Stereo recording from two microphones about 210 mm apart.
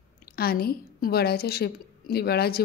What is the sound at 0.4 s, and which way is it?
A woman's voice, 45° left (ahead or behind).